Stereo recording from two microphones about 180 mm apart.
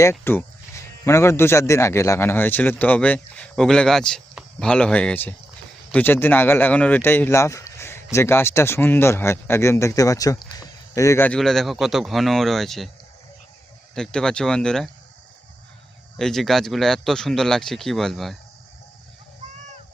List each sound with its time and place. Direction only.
0.0 s speech: 15° left (ahead or behind)
13.9 s speech: 5° left (ahead or behind)
16.1 s speech: centre (ahead or behind)
19.4 s a sound: 40° right (ahead or behind)